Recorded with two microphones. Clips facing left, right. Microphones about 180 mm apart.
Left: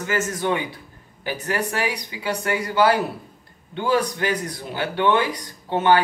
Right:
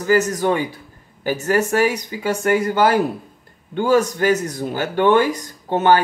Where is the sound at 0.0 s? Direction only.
40° right (ahead or behind).